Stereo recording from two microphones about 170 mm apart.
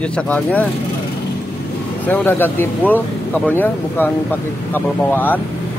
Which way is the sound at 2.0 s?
10° left (ahead or behind).